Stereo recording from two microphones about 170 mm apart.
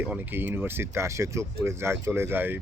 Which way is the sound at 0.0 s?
10° right (ahead or behind).